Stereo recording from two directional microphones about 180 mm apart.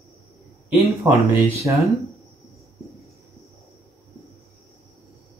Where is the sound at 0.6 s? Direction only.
15° right (ahead or behind).